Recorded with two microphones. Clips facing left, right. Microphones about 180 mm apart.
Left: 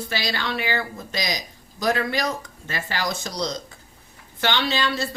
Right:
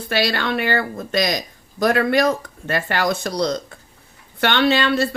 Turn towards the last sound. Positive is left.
turn(degrees=-60)  # may be behind; listen again after turning